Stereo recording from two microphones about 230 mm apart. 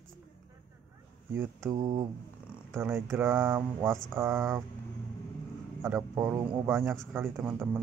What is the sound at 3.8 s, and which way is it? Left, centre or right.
Speech, centre.